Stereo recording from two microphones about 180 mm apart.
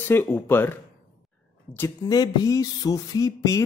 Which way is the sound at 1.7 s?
15° left (ahead or behind).